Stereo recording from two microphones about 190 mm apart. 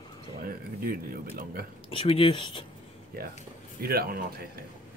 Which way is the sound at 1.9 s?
30° left (ahead or behind).